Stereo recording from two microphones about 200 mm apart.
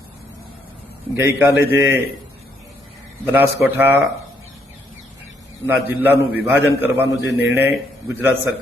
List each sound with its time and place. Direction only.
1.1 s a man's voice: 10° right (ahead or behind)
3.3 s a man's voice: 10° right (ahead or behind)
5.6 s a man's voice: 10° right (ahead or behind)